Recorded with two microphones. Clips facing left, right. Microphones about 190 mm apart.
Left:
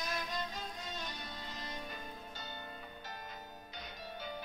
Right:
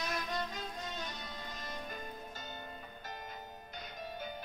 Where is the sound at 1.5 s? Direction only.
50° right (ahead or behind).